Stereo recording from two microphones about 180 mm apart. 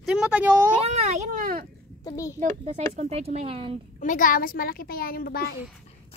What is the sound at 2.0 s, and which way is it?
Speech, 15° left (ahead or behind).